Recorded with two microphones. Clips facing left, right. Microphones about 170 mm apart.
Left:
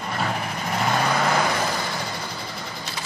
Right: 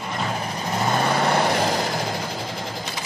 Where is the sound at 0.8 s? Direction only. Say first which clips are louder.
Right 1 dB; 25° right (ahead or behind); by 2.1 s 45° right (ahead or behind).